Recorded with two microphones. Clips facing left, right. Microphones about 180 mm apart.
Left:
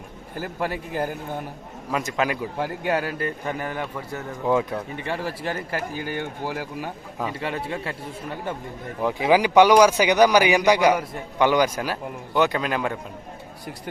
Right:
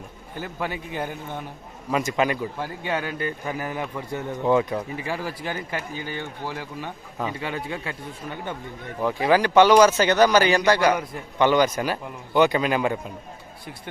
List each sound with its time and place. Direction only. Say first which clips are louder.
0.3 s speech: left 2 dB; centre (ahead or behind)
4.4 s speech: right 1 dB; centre (ahead or behind)
9.0 s speech: left 1 dB; 15° left (ahead or behind); by 13.0 s 5° right (ahead or behind)